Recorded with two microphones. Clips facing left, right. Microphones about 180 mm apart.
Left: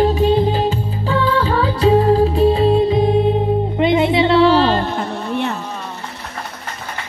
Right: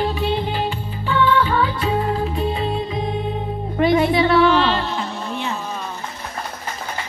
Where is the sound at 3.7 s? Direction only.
20° left (ahead or behind); by 5.5 s 60° left (ahead or behind).